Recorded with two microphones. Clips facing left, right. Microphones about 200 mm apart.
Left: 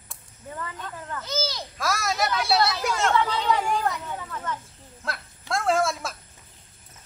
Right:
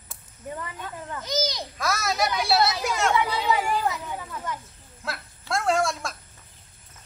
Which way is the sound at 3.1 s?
10° right (ahead or behind).